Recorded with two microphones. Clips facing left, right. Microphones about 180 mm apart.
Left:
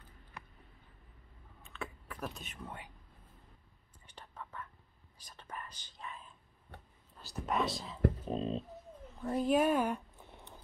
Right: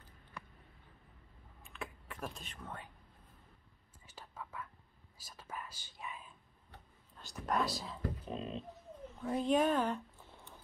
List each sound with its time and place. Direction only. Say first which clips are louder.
1.7 s a sound: left 2 dB; centre (ahead or behind)
2.6 s speech: left 1 dB; 15° left (ahead or behind)
4.0 s whispering: even; 5° right (ahead or behind)
7.4 s speech: left 1 dB; centre (ahead or behind)
8.3 s speech: left 6 dB; 35° left (ahead or behind)
9.2 s speech: left 2 dB; 5° left (ahead or behind)